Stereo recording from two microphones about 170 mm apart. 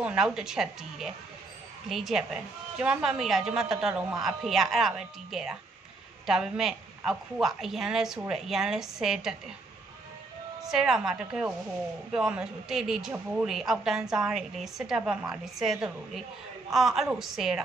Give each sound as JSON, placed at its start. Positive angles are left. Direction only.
{"t": 0.0, "sound": "speech", "side_deg": -5}
{"t": 10.6, "sound": "speech", "side_deg": 0}